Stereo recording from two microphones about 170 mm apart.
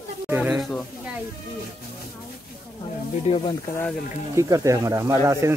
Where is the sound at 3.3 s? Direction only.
40° left (ahead or behind).